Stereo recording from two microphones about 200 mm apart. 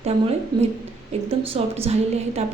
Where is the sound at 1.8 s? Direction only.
30° right (ahead or behind).